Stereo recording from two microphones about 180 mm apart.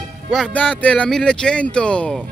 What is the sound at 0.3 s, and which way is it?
Speech, 5° left (ahead or behind).